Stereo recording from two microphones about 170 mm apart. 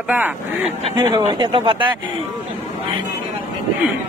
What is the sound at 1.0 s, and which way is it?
Speech, 25° right (ahead or behind).